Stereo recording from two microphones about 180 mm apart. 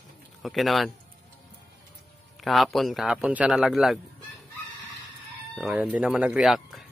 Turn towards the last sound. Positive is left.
turn(degrees=0)  # may be behind; listen again after turning